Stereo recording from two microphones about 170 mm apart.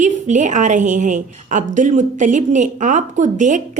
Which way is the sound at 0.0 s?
45° right (ahead or behind).